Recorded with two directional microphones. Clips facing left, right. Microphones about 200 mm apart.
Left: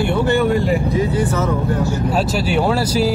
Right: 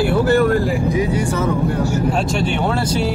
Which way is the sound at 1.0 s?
10° right (ahead or behind).